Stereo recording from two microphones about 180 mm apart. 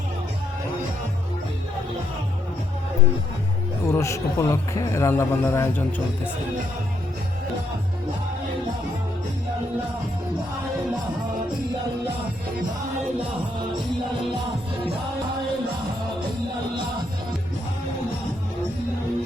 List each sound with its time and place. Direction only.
3.8 s a man's voice: 15° left (ahead or behind)